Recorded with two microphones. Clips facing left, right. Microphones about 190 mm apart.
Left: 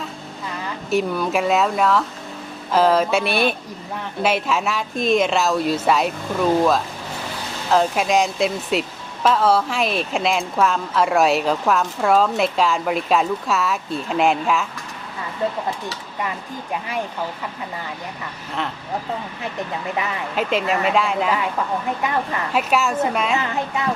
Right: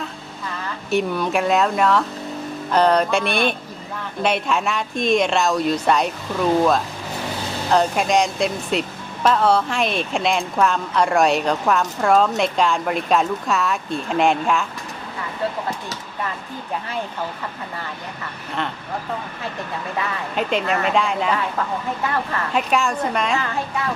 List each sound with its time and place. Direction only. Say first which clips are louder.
0.9 s speech: even; centre (ahead or behind)
7.7 s speech: even; centre (ahead or behind)
20.3 s speech: left 1 dB; centre (ahead or behind)
22.0 s speech: left 1 dB; 15° left (ahead or behind)
22.5 s speech: left 1 dB; 5° left (ahead or behind)